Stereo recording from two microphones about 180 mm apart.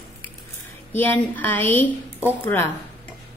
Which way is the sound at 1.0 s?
10° left (ahead or behind).